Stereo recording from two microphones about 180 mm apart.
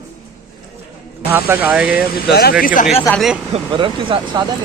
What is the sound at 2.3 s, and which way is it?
Speech, 55° left (ahead or behind).